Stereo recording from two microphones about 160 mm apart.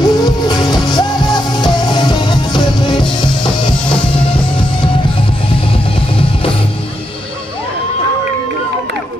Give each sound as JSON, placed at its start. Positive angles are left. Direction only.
{"t": 0.0, "sound": "music", "side_deg": 25}
{"t": 5.9, "sound": "music", "side_deg": 35}